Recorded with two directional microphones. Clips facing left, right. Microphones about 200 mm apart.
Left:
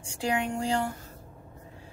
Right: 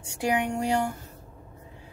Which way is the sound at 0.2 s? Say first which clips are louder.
Right 3 dB; 20° right (ahead or behind).